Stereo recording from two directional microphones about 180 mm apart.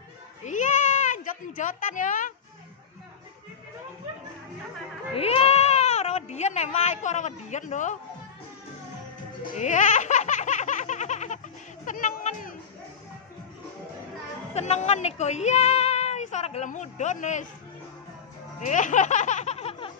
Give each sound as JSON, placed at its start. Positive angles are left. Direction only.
{"t": 0.5, "sound": "a sound", "side_deg": 45}
{"t": 5.1, "sound": "speech", "side_deg": 35}
{"t": 9.4, "sound": "baby laughter", "side_deg": 40}
{"t": 11.8, "sound": "a sound", "side_deg": 45}
{"t": 14.5, "sound": "a woman's voice", "side_deg": 40}
{"t": 18.6, "sound": "speech", "side_deg": 45}